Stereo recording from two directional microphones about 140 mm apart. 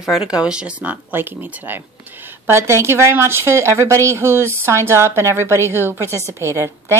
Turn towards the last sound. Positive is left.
turn(degrees=-20)  # may be behind; listen again after turning